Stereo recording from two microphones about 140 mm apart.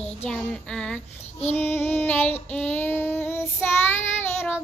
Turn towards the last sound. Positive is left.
turn(degrees=15)  # may be behind; listen again after turning